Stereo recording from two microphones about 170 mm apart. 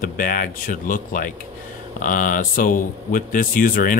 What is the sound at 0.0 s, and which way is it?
Speech, 55° left (ahead or behind).